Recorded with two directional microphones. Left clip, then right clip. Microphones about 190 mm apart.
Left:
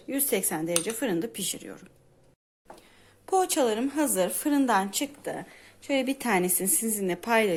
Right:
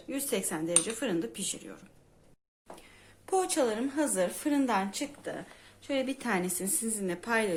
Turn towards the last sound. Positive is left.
turn(degrees=35)  # may be behind; listen again after turning